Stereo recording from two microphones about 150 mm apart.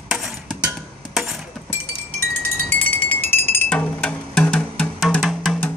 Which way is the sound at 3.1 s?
15° left (ahead or behind).